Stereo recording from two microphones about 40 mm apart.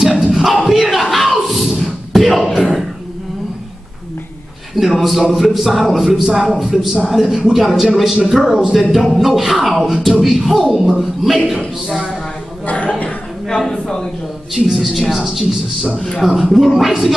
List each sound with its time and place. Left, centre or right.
0.3 s music: centre
0.7 s a sound: centre
4.7 s a man's voice: centre
12.6 s speech: left
13.7 s a sound: centre
14.5 s a man's voice: centre
15.2 s a man's voice: centre